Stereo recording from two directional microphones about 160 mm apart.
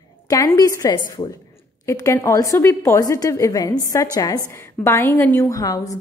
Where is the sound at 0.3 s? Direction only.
20° left (ahead or behind).